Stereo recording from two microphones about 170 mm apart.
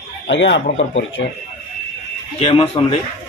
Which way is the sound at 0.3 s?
90° left.